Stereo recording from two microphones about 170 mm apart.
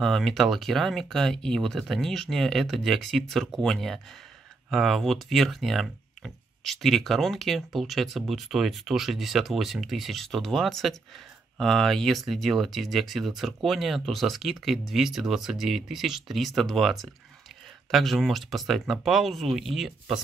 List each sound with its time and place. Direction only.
0.0 s speech: centre (ahead or behind)